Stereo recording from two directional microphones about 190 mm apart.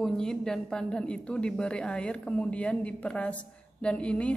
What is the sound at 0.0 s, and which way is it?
A woman's voice, 5° left (ahead or behind).